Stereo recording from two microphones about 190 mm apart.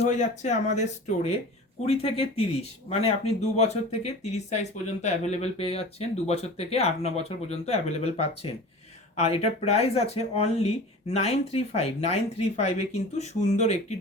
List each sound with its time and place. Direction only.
0.0 s speech: 35° left (ahead or behind)